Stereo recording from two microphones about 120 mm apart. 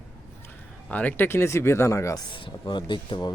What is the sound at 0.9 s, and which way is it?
Speech, 15° left (ahead or behind).